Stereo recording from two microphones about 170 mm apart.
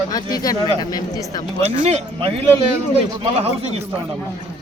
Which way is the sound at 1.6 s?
40° right (ahead or behind).